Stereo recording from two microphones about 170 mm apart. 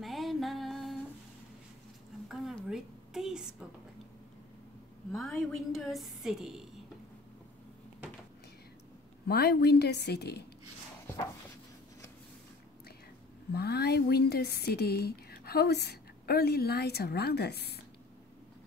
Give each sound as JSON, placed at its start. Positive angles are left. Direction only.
{"t": 0.0, "sound": "music", "side_deg": 0}
{"t": 2.2, "sound": "a sound", "side_deg": 0}
{"t": 5.1, "sound": "a woman's voice", "side_deg": 0}
{"t": 9.3, "sound": "speech", "side_deg": 75}
{"t": 13.5, "sound": "speech", "side_deg": 75}